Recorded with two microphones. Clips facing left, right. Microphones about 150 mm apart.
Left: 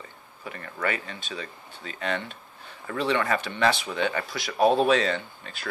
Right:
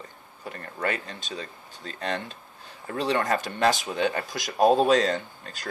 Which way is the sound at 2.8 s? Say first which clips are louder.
Even; 40° right (ahead or behind).